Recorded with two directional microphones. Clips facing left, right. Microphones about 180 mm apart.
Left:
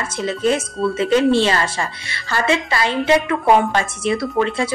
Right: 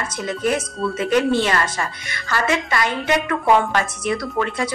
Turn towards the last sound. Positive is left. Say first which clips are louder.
# left 4 dB
turn(degrees=25)  # may be behind; listen again after turning